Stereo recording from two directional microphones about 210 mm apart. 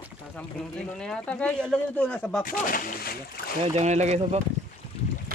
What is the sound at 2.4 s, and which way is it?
Speech, 40° left (ahead or behind).